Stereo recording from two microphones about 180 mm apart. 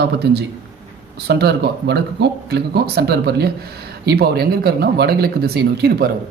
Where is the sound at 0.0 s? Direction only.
65° right (ahead or behind).